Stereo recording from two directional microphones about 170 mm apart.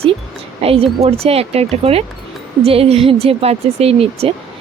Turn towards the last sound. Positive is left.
turn(degrees=-35)  # may be behind; listen again after turning